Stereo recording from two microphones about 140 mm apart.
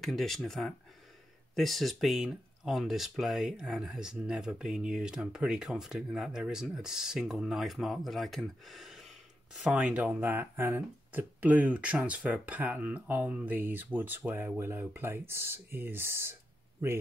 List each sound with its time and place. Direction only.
0.0 s speech: centre (ahead or behind); by 16.3 s 15° right (ahead or behind)